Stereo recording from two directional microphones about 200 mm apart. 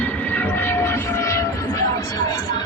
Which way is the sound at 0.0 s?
10° left (ahead or behind).